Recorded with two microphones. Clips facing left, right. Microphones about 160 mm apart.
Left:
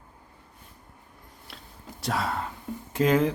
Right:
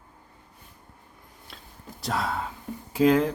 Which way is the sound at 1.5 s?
Centre (ahead or behind).